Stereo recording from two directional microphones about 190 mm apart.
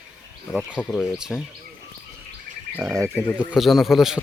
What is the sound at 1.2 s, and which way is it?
Speech, centre (ahead or behind).